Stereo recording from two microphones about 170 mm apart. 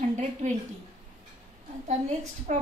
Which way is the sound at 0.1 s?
45° right (ahead or behind).